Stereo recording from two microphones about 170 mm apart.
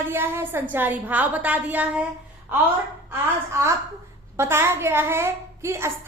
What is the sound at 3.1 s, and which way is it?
A woman's voice, 15° right (ahead or behind).